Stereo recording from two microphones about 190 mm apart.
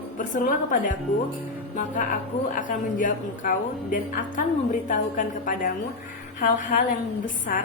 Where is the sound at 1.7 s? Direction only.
45° left (ahead or behind).